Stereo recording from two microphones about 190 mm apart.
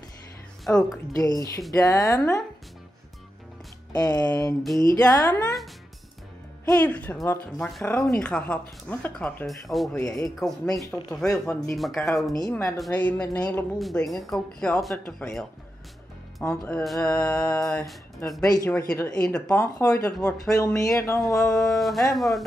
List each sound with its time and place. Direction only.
0.7 s speech: 5° left (ahead or behind)
1.1 s speech: 20° left (ahead or behind)
1.7 s music: 20° left (ahead or behind)
3.9 s speech: 20° left (ahead or behind)
4.3 s music: 15° left (ahead or behind)
6.7 s music: 10° left (ahead or behind)
7.6 s speech: 5° left (ahead or behind)
12.4 s music: 15° left (ahead or behind)
12.7 s speech: 5° left (ahead or behind)
16.3 s music: 5° left (ahead or behind)
18.7 s speech: 10° left (ahead or behind)
19.5 s music: 10° left (ahead or behind)
21.5 s speech: centre (ahead or behind)